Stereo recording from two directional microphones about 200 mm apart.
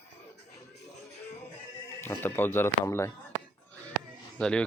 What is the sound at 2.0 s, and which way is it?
Speech, 10° left (ahead or behind).